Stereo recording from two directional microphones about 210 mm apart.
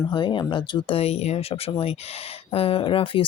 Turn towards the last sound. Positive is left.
turn(degrees=25)  # may be behind; listen again after turning